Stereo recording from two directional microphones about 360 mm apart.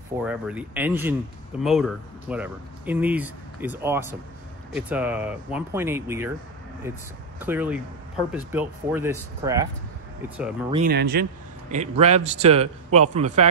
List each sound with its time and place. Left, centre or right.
0.2 s speech: centre
7.3 s speech: centre
10.7 s speech: right